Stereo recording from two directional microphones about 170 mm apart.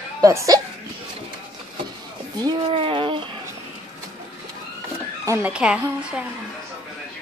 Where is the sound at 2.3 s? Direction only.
25° right (ahead or behind).